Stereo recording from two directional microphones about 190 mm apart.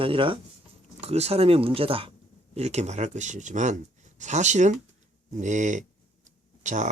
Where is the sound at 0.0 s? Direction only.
30° right (ahead or behind).